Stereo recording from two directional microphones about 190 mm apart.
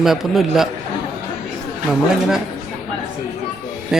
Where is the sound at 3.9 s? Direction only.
Centre (ahead or behind).